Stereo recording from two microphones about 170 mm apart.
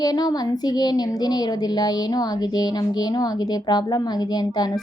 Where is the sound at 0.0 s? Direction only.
25° left (ahead or behind).